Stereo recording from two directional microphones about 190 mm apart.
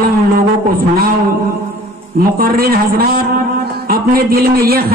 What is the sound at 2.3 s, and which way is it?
A man's voice, 50° right (ahead or behind).